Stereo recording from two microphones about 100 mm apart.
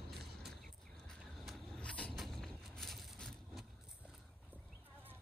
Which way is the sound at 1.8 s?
10° left (ahead or behind).